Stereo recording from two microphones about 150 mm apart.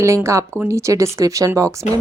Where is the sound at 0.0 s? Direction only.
20° right (ahead or behind).